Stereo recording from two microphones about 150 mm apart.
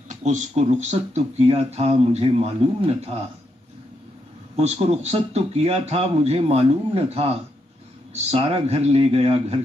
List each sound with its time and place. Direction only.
0.1 s speech: 50° right (ahead or behind)
4.6 s speech: 45° right (ahead or behind)